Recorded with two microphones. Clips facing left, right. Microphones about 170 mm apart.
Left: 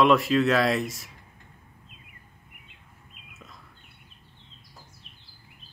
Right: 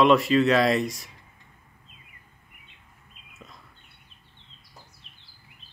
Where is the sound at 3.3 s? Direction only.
Centre (ahead or behind).